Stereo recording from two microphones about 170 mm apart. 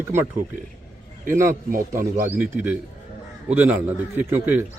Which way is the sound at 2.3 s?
10° right (ahead or behind).